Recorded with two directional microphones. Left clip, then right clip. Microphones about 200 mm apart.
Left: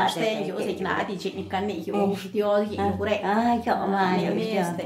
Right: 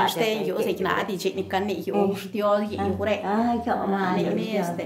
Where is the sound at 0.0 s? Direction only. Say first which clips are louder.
Right 1 dB; 55° right (ahead or behind).